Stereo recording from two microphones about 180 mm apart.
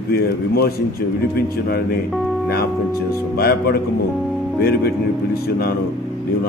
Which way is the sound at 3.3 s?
60° left (ahead or behind).